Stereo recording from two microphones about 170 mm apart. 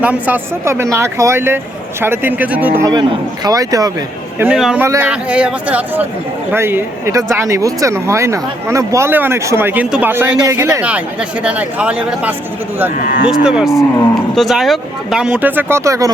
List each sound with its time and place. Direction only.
0.0 s speech: 10° right (ahead or behind)
2.9 s a man's voice: 25° right (ahead or behind)
4.4 s speech: 5° right (ahead or behind)
13.0 s speech: 50° left (ahead or behind)
13.2 s speech: 5° right (ahead or behind)